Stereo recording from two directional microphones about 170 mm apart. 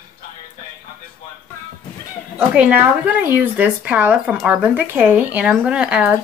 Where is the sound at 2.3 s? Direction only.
10° right (ahead or behind).